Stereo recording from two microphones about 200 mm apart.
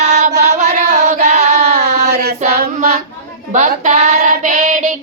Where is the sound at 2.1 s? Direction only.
55° right (ahead or behind).